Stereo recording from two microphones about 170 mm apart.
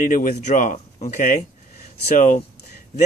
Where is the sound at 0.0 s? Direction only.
50° left (ahead or behind).